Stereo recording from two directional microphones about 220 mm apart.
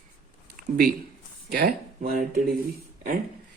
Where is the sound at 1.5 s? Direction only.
40° right (ahead or behind).